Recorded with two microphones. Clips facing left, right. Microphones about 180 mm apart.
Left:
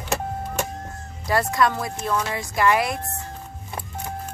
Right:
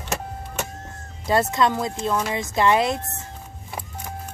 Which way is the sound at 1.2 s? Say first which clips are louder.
Right 1 dB; 20° right (ahead or behind).